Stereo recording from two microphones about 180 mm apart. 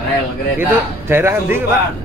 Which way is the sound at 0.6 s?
10° right (ahead or behind).